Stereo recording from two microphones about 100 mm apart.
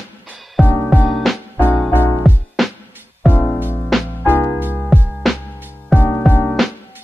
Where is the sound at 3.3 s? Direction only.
20° left (ahead or behind).